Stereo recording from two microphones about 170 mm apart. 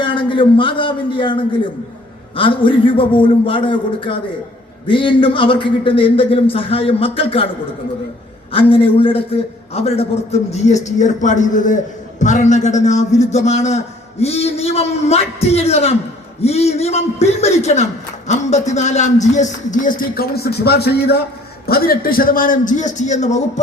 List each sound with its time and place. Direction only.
0.0 s a man's voice: 30° left (ahead or behind)
8.5 s a man's voice: 35° left (ahead or behind)